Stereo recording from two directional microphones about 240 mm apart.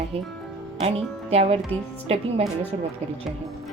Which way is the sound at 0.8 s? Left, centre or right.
Right.